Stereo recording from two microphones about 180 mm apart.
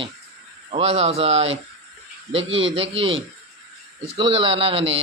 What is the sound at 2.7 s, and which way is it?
Speech, 30° right (ahead or behind).